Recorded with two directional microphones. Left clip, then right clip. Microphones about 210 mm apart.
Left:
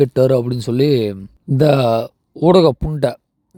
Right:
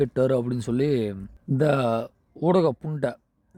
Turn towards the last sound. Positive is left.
turn(degrees=25)  # may be behind; listen again after turning